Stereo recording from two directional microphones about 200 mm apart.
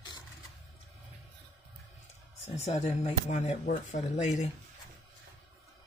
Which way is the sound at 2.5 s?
35° left (ahead or behind).